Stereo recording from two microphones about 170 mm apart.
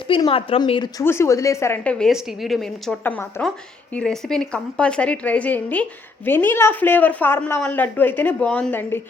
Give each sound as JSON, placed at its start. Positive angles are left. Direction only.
{"t": 0.1, "sound": "speech", "side_deg": 30}
{"t": 1.0, "sound": "a woman's voice", "side_deg": 15}